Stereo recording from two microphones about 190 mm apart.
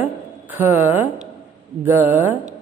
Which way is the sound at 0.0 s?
10° right (ahead or behind).